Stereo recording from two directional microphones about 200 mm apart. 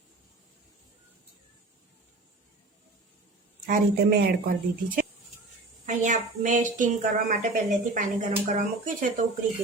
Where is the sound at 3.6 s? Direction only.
50° right (ahead or behind).